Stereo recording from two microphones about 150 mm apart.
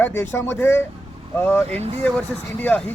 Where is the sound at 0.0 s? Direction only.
15° left (ahead or behind).